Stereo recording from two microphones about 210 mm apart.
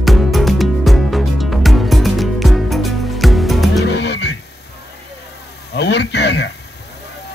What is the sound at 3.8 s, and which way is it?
Music, 55° left (ahead or behind).